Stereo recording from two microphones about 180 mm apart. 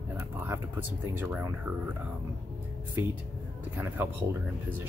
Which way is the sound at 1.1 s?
10° right (ahead or behind).